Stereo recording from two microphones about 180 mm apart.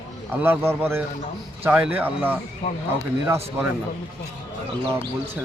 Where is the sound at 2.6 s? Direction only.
30° left (ahead or behind).